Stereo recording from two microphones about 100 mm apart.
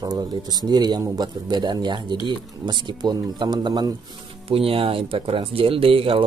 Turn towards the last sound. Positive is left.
turn(degrees=-65)  # may be behind; listen again after turning